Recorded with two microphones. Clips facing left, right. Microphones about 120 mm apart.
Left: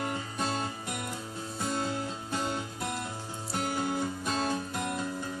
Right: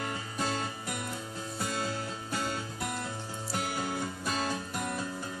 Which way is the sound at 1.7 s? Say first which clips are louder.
Left 4 dB; 20° left (ahead or behind).